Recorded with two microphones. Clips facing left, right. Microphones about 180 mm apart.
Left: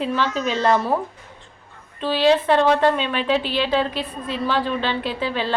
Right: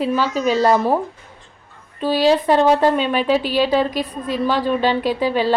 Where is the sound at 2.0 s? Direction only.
10° right (ahead or behind).